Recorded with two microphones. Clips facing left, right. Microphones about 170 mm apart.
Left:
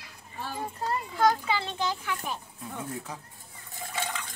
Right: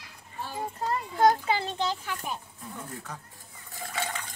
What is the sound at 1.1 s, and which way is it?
Speech, 40° right (ahead or behind).